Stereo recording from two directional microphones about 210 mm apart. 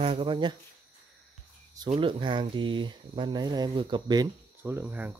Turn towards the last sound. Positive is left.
turn(degrees=-10)  # may be behind; listen again after turning